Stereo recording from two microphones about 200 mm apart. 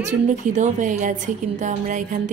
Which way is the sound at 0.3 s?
35° right (ahead or behind).